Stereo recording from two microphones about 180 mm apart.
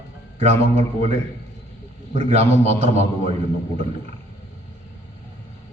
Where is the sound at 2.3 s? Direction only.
35° right (ahead or behind).